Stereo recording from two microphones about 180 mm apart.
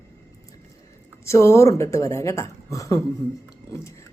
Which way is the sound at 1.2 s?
15° left (ahead or behind).